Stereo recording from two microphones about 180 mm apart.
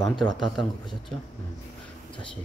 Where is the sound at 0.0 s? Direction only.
Centre (ahead or behind).